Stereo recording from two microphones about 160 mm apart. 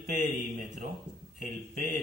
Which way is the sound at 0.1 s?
50° right (ahead or behind).